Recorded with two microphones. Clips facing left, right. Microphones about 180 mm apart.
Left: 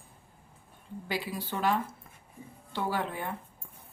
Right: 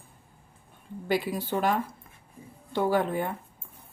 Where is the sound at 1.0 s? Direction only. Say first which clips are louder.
Right 7 dB; 50° right (ahead or behind).